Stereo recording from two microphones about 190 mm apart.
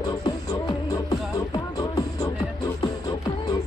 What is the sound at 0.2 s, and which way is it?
Music, 20° left (ahead or behind).